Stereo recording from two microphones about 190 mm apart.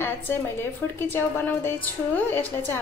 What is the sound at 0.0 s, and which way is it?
A woman's voice, 10° left (ahead or behind).